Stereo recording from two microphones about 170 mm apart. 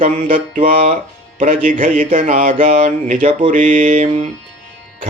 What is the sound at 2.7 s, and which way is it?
Speech, 45° right (ahead or behind).